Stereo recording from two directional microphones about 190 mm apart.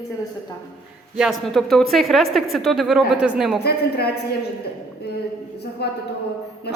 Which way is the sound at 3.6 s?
55° left (ahead or behind).